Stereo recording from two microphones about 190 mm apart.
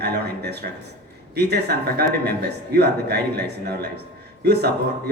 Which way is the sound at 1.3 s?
60° right (ahead or behind).